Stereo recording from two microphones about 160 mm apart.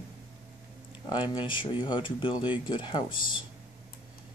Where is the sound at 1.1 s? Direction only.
30° left (ahead or behind).